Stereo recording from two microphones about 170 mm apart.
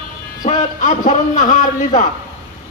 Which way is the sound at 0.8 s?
50° left (ahead or behind).